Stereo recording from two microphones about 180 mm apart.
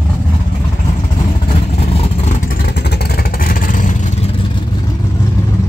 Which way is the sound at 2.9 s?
60° left (ahead or behind).